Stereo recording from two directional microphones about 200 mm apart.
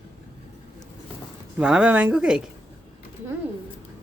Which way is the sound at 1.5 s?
5° right (ahead or behind).